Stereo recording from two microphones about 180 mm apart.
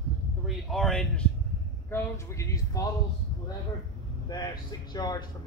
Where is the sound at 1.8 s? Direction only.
15° left (ahead or behind).